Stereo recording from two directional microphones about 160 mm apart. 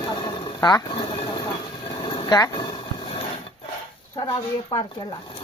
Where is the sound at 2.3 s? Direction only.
20° left (ahead or behind).